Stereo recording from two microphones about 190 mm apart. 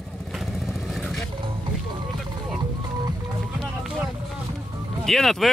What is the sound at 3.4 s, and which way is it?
Music, centre (ahead or behind).